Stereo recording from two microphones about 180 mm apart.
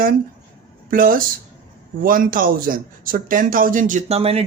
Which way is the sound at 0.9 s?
50° right (ahead or behind).